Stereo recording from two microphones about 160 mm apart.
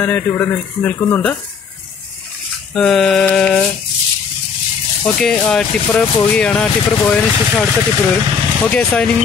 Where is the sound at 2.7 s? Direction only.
5° left (ahead or behind).